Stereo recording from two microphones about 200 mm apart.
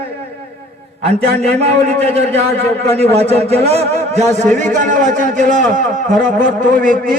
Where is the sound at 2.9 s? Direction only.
30° right (ahead or behind).